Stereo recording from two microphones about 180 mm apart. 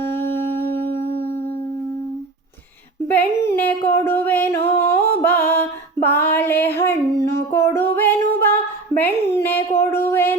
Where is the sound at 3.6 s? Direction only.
10° left (ahead or behind).